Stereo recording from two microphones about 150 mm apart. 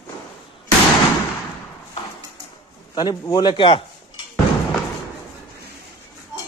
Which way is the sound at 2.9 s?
30° left (ahead or behind).